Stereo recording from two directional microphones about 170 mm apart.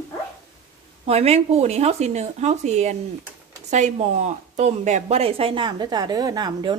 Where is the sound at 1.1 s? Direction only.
40° right (ahead or behind).